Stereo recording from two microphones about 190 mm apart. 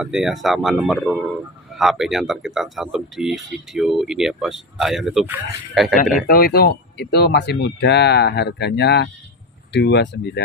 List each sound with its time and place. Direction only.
0.0 s speech: centre (ahead or behind)
6.2 s speech: 50° left (ahead or behind)